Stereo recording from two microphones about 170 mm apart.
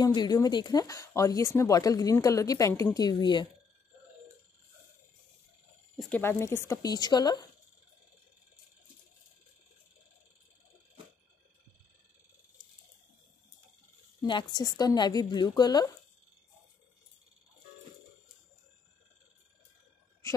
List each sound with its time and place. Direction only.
0.0 s speech: 25° left (ahead or behind)
5.9 s speech: 10° left (ahead or behind); by 7.4 s 25° left (ahead or behind)
14.5 s speech: 20° left (ahead or behind)
20.2 s a sound: 15° left (ahead or behind)